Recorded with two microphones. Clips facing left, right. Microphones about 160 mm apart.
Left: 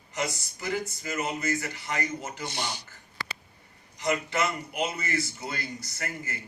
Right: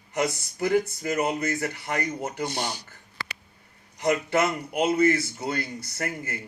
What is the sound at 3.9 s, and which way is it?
A man's voice, 55° right (ahead or behind).